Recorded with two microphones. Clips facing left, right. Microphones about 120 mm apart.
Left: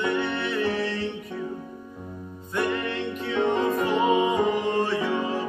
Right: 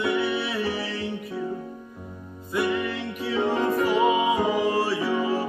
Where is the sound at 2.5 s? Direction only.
5° right (ahead or behind).